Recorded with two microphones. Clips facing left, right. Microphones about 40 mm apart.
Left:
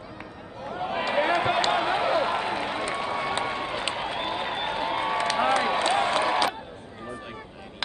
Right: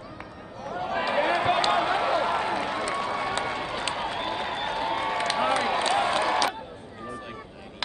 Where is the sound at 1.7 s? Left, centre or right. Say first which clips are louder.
Even; centre.